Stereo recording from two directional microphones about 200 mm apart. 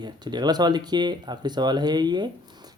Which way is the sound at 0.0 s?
20° right (ahead or behind).